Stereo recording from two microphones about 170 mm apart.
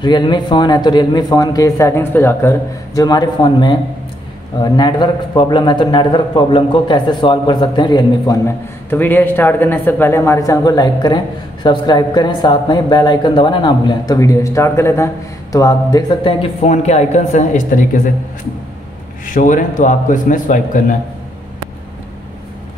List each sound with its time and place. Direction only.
0.0 s a man's voice: 25° left (ahead or behind)
16.6 s a man's voice: 40° left (ahead or behind)
19.2 s a man's voice: 50° left (ahead or behind)